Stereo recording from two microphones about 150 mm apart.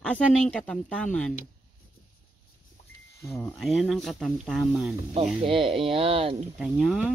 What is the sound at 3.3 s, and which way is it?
Speech, 5° left (ahead or behind).